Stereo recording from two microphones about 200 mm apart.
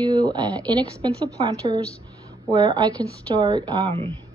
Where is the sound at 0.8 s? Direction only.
5° left (ahead or behind).